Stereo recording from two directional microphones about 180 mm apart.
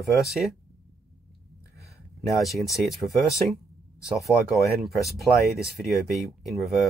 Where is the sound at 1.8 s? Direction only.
15° left (ahead or behind).